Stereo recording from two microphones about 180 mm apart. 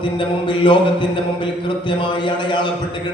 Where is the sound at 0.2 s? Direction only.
30° left (ahead or behind).